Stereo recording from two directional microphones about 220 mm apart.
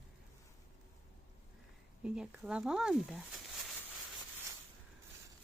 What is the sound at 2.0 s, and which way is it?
Speech, 5° right (ahead or behind).